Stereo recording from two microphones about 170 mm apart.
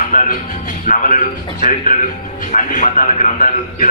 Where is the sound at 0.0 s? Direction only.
50° left (ahead or behind).